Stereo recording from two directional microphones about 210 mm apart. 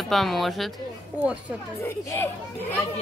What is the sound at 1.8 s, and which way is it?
Speech, 15° left (ahead or behind).